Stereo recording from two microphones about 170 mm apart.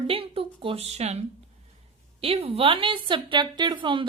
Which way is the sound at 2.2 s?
35° right (ahead or behind).